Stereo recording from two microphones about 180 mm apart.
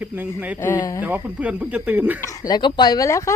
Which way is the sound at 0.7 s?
15° left (ahead or behind).